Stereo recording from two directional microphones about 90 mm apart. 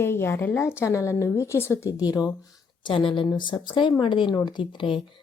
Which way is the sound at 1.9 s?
45° left (ahead or behind).